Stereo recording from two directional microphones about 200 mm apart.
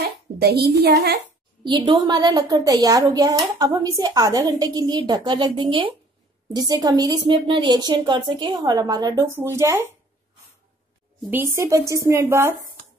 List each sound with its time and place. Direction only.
0.0 s a woman's voice: 55° right (ahead or behind)
1.6 s a woman's voice: 20° right (ahead or behind)
11.2 s a woman's voice: 10° right (ahead or behind)